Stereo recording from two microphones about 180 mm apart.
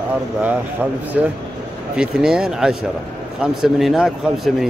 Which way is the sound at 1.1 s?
5° right (ahead or behind).